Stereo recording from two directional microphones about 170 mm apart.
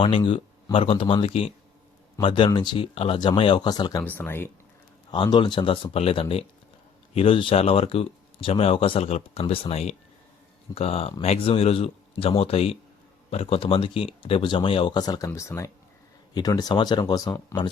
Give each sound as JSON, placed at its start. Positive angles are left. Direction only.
{"t": 0.0, "sound": "speech", "side_deg": 30}
{"t": 4.0, "sound": "speech", "side_deg": 10}
{"t": 5.1, "sound": "speech", "side_deg": 25}